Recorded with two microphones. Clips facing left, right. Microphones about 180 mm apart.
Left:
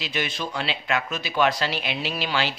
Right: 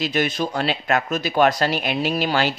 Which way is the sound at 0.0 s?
45° right (ahead or behind).